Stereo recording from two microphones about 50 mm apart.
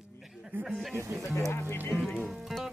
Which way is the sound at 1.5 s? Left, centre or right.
Left.